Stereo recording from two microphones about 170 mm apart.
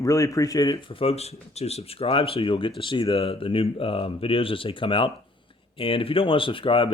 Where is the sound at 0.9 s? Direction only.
35° left (ahead or behind).